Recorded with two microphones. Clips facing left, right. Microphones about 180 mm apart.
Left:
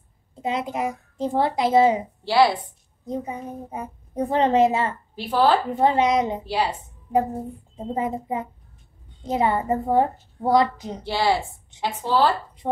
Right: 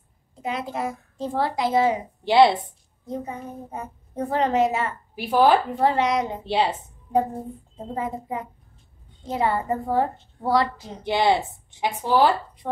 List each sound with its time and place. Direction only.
0.4 s a child's voice: 20° left (ahead or behind)
2.2 s a woman's voice: 20° right (ahead or behind)
3.1 s a child's voice: 10° left (ahead or behind); by 4.9 s 30° left (ahead or behind)
5.1 s speech: 10° right (ahead or behind)
5.7 s a child's voice: 20° left (ahead or behind)
6.4 s a woman's voice: 25° right (ahead or behind)
7.1 s a woman's voice: 5° left (ahead or behind)
7.9 s a child's voice: 20° left (ahead or behind)
11.1 s a woman's voice: 20° right (ahead or behind)